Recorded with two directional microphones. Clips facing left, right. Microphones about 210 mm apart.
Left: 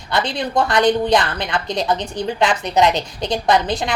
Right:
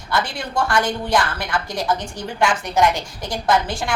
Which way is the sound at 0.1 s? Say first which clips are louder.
Left 3 dB; 20° left (ahead or behind).